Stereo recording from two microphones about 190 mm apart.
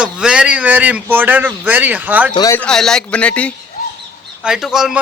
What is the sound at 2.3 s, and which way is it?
Speech, 20° left (ahead or behind).